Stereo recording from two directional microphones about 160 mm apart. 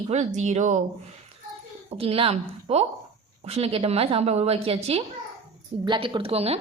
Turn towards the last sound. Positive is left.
turn(degrees=-40)  # may be behind; listen again after turning